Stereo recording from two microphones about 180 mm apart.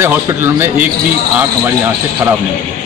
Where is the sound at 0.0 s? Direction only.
15° right (ahead or behind).